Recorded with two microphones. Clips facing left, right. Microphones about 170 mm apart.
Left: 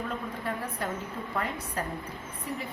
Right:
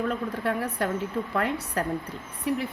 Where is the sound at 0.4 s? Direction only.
70° right (ahead or behind).